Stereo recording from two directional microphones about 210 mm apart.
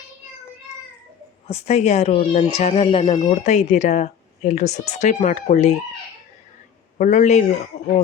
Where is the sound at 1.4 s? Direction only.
30° left (ahead or behind).